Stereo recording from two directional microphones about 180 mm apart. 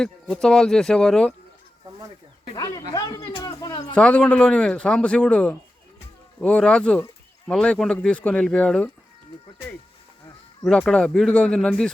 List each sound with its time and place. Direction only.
0.0 s speech: 5° left (ahead or behind)
2.6 s speech: 20° left (ahead or behind)
3.9 s speech: 5° left (ahead or behind)
10.6 s speech: 5° left (ahead or behind)